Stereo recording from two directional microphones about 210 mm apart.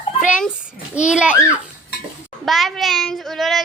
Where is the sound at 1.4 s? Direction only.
10° left (ahead or behind).